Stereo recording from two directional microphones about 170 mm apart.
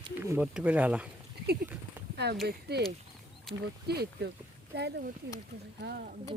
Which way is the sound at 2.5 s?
75° right (ahead or behind).